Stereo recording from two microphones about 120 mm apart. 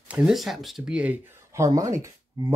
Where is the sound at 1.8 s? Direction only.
25° right (ahead or behind).